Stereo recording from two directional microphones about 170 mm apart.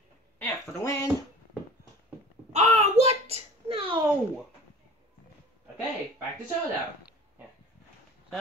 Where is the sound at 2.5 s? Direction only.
40° right (ahead or behind).